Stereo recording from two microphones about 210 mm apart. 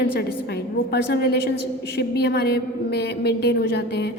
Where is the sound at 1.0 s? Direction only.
50° left (ahead or behind).